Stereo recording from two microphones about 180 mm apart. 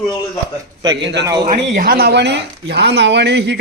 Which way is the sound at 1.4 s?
50° right (ahead or behind).